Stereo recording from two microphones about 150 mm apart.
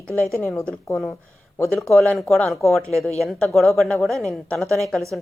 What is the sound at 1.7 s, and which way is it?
A woman's voice, 5° left (ahead or behind).